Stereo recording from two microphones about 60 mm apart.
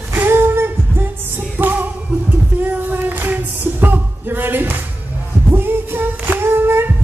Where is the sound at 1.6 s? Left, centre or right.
Right.